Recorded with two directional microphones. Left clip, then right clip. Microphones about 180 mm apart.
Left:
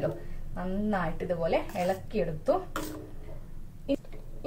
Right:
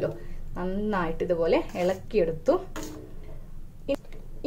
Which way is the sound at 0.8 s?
55° right (ahead or behind).